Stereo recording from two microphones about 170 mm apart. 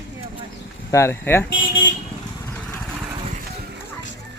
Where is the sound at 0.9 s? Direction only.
15° left (ahead or behind).